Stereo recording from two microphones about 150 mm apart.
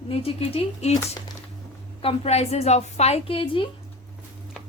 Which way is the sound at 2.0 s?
40° left (ahead or behind).